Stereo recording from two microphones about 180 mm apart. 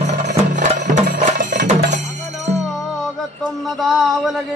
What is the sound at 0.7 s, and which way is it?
Music, 40° right (ahead or behind).